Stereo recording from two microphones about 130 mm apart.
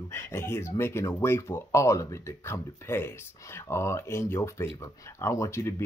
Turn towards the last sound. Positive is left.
turn(degrees=25)  # may be behind; listen again after turning